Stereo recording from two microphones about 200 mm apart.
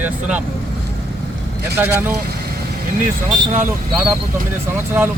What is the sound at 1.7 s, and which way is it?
Speech, 10° right (ahead or behind).